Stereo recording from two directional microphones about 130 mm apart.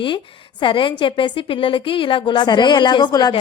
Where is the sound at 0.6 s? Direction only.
40° left (ahead or behind).